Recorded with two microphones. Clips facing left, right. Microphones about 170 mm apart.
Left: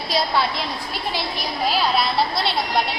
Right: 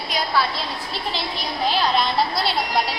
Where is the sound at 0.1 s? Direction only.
35° left (ahead or behind).